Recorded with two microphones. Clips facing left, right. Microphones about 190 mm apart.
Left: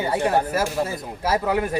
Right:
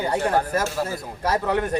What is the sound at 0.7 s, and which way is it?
Speech, 20° left (ahead or behind).